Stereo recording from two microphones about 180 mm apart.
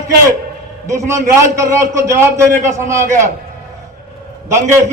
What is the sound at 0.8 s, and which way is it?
A man's voice, 15° right (ahead or behind).